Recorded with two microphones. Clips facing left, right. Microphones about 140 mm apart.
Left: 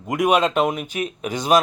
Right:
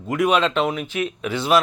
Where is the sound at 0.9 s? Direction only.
40° left (ahead or behind).